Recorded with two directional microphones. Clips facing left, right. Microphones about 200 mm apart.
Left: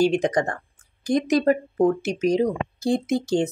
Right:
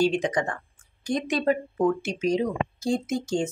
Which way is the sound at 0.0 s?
40° left (ahead or behind).